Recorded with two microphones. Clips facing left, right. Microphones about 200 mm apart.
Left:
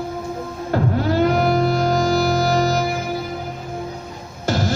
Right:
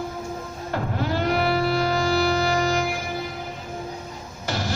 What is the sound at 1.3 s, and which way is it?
Music, 45° left (ahead or behind).